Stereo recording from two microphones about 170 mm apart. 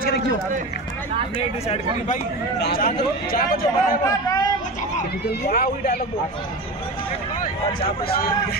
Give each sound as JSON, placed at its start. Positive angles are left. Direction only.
{"t": 2.6, "sound": "a man's voice", "side_deg": 60}
{"t": 4.0, "sound": "a man's voice", "side_deg": 20}
{"t": 5.4, "sound": "a man's voice", "side_deg": 60}